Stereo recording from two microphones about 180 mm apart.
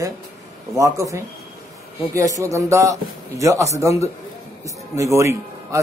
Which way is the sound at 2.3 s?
15° right (ahead or behind).